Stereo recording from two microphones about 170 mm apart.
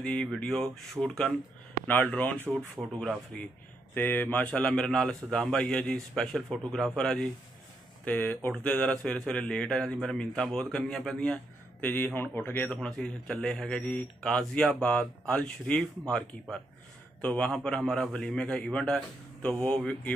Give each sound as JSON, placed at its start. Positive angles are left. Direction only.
{"t": 0.0, "sound": "a man's voice", "side_deg": 5}